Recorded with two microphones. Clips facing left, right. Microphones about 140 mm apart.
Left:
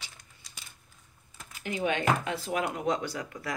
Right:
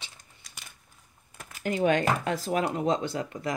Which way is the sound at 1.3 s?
50° right (ahead or behind).